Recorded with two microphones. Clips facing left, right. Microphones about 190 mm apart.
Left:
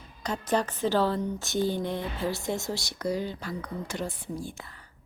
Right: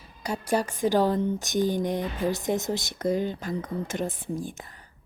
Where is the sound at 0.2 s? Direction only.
10° right (ahead or behind).